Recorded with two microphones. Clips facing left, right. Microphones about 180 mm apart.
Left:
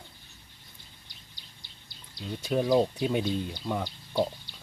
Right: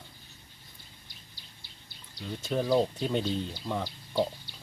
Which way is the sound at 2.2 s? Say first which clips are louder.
Left 3 dB; 10° left (ahead or behind).